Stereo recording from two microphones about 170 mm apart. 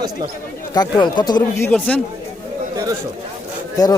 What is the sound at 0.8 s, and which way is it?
Speech, 25° left (ahead or behind).